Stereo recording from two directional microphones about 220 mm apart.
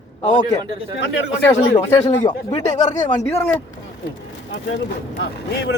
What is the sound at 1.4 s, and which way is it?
Speech, 10° left (ahead or behind).